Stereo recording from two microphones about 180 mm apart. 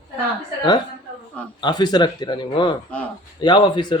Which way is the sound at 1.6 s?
25° left (ahead or behind).